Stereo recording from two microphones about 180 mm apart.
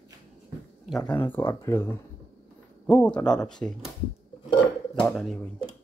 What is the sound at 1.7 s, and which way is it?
Speech, 10° left (ahead or behind).